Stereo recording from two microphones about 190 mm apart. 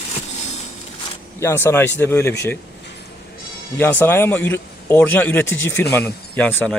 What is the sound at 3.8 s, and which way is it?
Speech, 10° left (ahead or behind).